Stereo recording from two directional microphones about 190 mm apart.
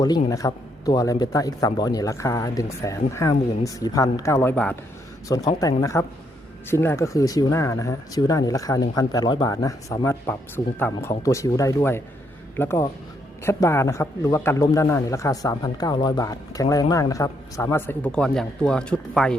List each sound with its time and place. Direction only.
0.3 s a man's voice: 15° left (ahead or behind)
5.3 s a man's voice: 20° left (ahead or behind)